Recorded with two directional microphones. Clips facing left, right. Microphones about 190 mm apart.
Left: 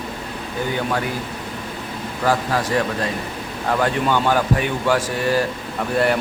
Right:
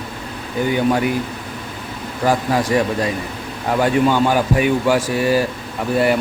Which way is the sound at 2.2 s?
15° right (ahead or behind).